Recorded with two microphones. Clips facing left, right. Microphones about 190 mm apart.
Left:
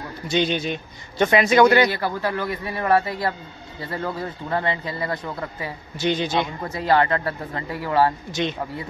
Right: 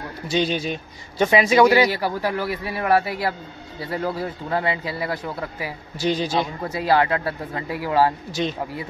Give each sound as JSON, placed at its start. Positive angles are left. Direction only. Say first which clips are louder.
{"t": 0.5, "sound": "speech", "louder": "even", "side_deg": -5}
{"t": 6.0, "sound": "a man's voice", "louder": "even", "side_deg": -35}
{"t": 6.6, "sound": "speech", "louder": "even", "side_deg": -10}